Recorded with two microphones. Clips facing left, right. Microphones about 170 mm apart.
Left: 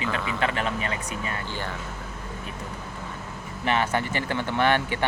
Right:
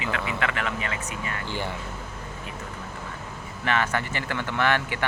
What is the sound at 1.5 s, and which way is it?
Speech, 15° right (ahead or behind).